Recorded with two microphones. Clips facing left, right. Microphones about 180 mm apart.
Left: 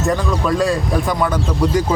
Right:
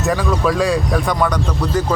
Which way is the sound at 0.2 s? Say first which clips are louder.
Right 1 dB; centre (ahead or behind).